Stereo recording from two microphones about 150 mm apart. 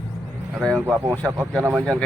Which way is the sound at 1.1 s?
10° left (ahead or behind).